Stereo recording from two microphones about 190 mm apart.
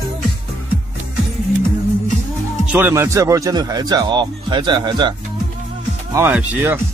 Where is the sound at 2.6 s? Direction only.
10° right (ahead or behind).